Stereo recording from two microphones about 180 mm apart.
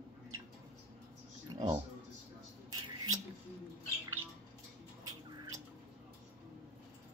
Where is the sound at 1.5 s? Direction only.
25° right (ahead or behind).